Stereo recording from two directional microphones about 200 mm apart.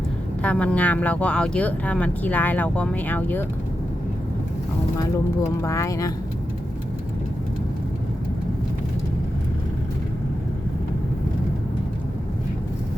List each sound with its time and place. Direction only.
0.4 s speech: 5° left (ahead or behind)
5.6 s speech: 15° left (ahead or behind)